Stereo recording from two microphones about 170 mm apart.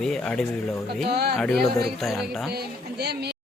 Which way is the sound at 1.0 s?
70° right (ahead or behind).